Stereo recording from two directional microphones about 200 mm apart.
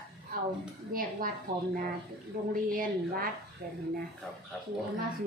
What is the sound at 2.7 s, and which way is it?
Speech, 45° right (ahead or behind).